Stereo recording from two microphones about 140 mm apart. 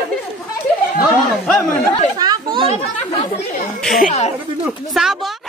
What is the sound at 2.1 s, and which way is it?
Chatter, 30° right (ahead or behind).